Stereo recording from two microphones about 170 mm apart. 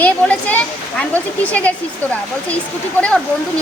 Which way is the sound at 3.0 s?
5° left (ahead or behind).